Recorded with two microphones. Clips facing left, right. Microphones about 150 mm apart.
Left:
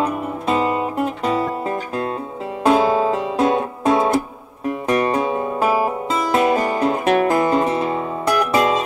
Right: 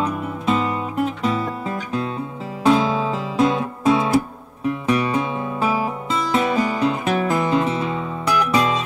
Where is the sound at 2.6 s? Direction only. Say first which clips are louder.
Left 2 dB; 45° left (ahead or behind).